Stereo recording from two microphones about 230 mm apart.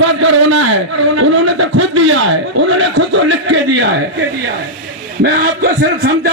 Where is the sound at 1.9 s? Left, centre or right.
Right.